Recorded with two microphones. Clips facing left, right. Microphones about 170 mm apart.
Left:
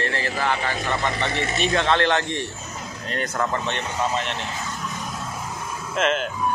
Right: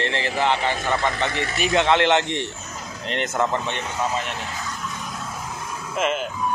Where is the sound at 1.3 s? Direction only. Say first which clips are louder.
Left 1 dB; 20° left (ahead or behind).